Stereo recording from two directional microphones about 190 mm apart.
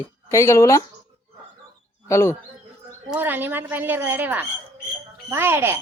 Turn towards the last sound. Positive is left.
turn(degrees=-10)  # may be behind; listen again after turning